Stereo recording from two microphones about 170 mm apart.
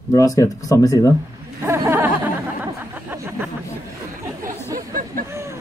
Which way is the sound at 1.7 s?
15° right (ahead or behind).